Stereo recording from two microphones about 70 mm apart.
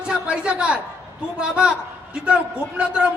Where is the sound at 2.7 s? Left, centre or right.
Centre.